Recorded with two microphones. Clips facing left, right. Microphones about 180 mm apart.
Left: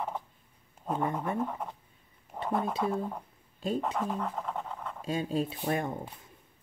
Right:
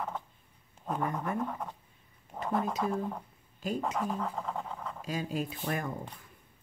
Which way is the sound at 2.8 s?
5° left (ahead or behind).